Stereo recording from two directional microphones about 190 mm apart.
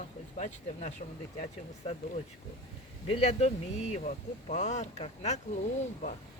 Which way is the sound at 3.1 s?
35° left (ahead or behind).